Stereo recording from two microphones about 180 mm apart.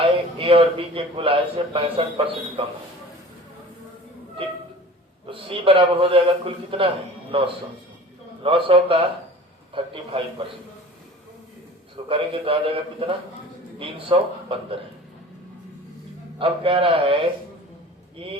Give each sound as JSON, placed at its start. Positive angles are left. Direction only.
{"t": 0.0, "sound": "a man's voice", "side_deg": -30}
{"t": 5.3, "sound": "a man's voice", "side_deg": -30}
{"t": 12.0, "sound": "a man's voice", "side_deg": -30}
{"t": 16.4, "sound": "a man's voice", "side_deg": -30}
{"t": 18.2, "sound": "a man's voice", "side_deg": -30}